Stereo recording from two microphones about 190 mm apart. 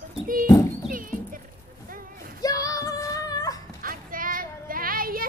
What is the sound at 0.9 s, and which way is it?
Clip-clop, 45° right (ahead or behind).